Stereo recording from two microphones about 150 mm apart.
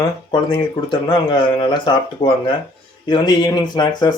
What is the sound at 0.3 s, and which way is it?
Speech, 30° left (ahead or behind).